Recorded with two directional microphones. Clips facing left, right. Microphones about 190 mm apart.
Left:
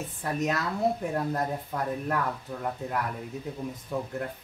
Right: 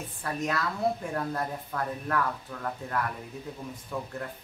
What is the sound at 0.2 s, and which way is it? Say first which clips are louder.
Speech: left 2 dB; 20° left (ahead or behind).